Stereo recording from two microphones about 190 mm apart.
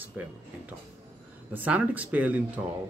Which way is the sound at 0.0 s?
10° right (ahead or behind).